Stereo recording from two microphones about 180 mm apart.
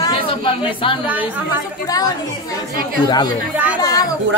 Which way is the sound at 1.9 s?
20° left (ahead or behind).